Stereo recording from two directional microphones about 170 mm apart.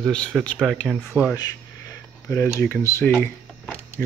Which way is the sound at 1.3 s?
20° left (ahead or behind).